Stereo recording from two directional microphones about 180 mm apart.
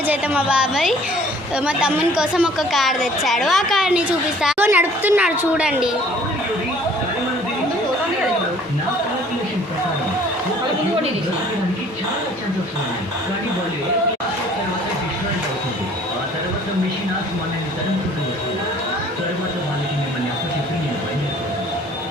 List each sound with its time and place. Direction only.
0.1 s a woman's voice: 5° right (ahead or behind)